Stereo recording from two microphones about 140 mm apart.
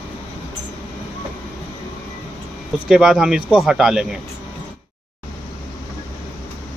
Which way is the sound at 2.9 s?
5° right (ahead or behind).